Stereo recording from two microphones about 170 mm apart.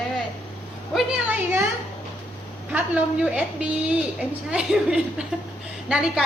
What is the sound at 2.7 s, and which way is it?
A woman's voice, 10° right (ahead or behind).